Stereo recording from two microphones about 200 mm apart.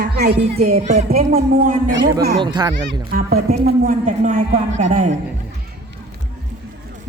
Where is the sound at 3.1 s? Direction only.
50° right (ahead or behind).